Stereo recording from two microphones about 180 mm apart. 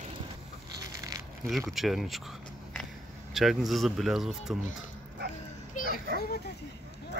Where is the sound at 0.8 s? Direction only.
20° right (ahead or behind).